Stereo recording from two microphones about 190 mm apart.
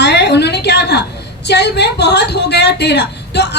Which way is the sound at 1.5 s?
60° left (ahead or behind).